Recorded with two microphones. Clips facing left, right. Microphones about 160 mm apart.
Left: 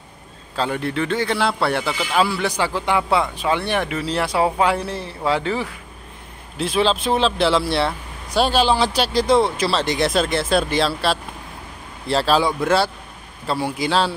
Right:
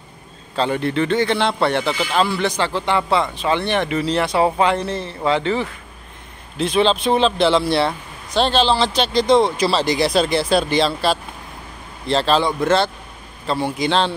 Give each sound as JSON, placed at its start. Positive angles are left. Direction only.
{"t": 0.6, "sound": "a man's voice", "side_deg": 5}